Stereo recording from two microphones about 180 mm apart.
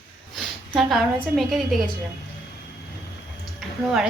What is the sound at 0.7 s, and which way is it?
A woman's voice, centre (ahead or behind).